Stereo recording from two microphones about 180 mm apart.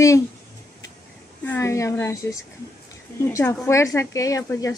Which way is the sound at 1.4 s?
15° left (ahead or behind).